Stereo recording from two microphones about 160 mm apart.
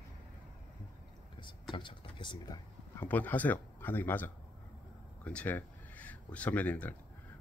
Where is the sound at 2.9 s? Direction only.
10° left (ahead or behind).